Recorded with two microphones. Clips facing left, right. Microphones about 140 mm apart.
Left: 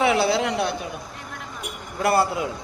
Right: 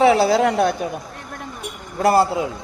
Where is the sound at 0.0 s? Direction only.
35° right (ahead or behind).